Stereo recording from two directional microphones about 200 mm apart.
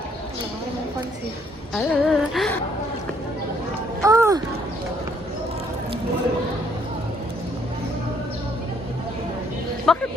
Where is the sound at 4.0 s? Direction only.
15° right (ahead or behind).